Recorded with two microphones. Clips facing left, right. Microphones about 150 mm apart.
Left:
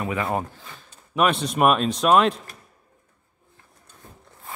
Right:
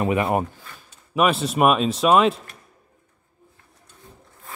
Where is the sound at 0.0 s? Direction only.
20° right (ahead or behind).